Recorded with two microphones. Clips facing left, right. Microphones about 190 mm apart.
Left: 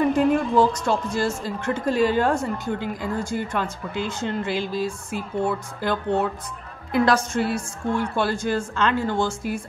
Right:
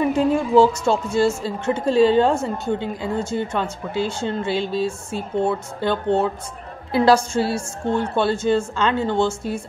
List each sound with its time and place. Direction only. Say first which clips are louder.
0.0 s speech: even; 5° right (ahead or behind)
1.1 s a woman's voice: right 5 dB; 25° right (ahead or behind)